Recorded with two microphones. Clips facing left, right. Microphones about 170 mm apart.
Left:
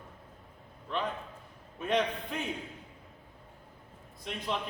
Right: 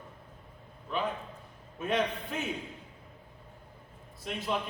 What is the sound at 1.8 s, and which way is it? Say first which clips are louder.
Speech: even; centre (ahead or behind).